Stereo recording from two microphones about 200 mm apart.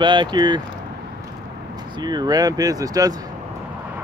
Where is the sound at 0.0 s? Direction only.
25° right (ahead or behind).